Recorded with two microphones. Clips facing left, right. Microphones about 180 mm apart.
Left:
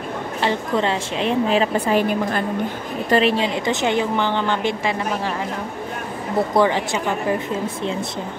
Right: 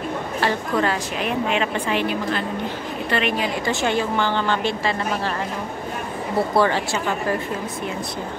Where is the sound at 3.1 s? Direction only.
30° left (ahead or behind); by 5.3 s 15° left (ahead or behind).